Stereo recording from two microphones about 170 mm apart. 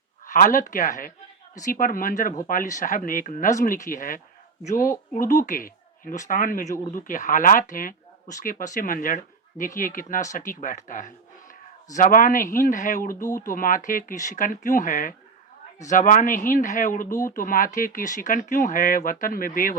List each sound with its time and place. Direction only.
0.3 s speech: 50° left (ahead or behind)